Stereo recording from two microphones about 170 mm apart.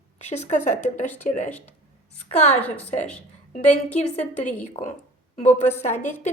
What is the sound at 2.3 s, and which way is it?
Speech, 40° left (ahead or behind).